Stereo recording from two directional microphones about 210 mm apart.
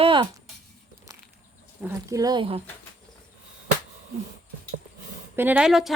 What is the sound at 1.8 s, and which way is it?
Speech, 15° right (ahead or behind).